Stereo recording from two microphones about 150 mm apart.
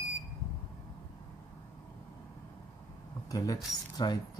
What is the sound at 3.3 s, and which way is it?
Speech, 25° left (ahead or behind).